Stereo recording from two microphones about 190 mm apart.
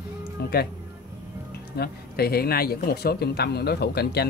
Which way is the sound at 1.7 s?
55° left (ahead or behind).